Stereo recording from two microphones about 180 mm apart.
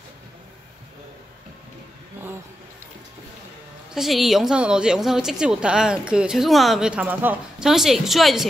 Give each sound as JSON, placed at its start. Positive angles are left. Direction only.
{"t": 3.9, "sound": "a woman's voice", "side_deg": 0}